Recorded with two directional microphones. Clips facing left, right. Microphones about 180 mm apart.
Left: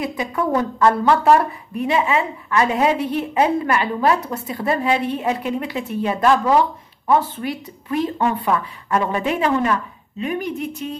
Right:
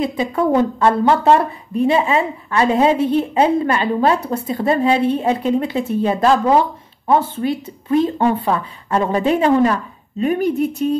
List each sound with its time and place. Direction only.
0.0 s speech: 25° right (ahead or behind)